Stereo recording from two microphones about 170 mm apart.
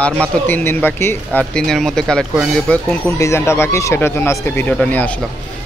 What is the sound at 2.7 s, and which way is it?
Speech, 15° left (ahead or behind).